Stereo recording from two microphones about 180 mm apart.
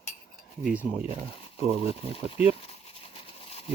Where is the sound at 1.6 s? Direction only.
35° left (ahead or behind).